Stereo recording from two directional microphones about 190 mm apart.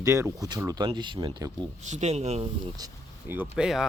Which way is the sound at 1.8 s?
40° right (ahead or behind).